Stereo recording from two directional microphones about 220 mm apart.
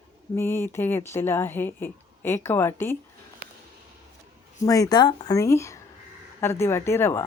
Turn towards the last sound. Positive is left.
turn(degrees=10)  # may be behind; listen again after turning